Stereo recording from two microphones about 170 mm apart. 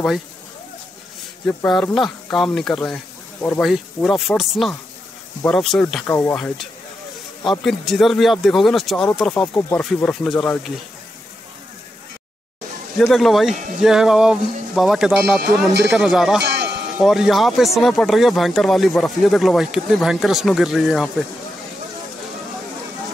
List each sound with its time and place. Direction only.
1.4 s speech: 10° left (ahead or behind)
9.4 s speech: 15° left (ahead or behind)
12.9 s speech: centre (ahead or behind)
16.4 s a sound: 85° right
17.0 s speech: centre (ahead or behind)